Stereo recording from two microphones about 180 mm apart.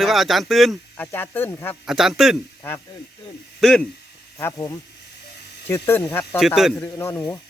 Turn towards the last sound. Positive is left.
turn(degrees=15)  # may be behind; listen again after turning